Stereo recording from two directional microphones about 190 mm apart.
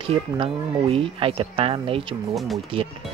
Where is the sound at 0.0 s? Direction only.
30° right (ahead or behind).